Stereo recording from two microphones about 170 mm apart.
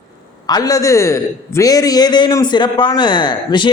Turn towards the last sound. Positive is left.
turn(degrees=25)  # may be behind; listen again after turning